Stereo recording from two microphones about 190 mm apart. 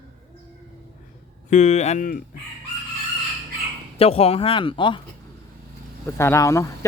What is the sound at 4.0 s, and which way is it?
Speech, 30° left (ahead or behind).